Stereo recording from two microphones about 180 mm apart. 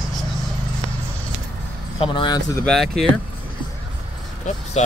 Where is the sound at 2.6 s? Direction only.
Centre (ahead or behind).